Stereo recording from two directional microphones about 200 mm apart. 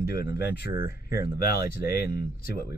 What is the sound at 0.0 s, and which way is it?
Speech, 50° left (ahead or behind).